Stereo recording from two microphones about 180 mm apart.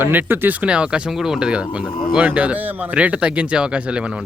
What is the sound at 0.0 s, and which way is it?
Speech, 10° right (ahead or behind).